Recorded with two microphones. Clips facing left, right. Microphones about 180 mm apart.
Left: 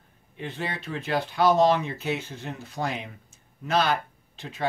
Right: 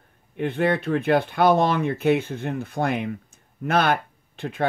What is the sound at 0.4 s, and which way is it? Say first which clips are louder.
Speech: right 11 dB; 55° right (ahead or behind).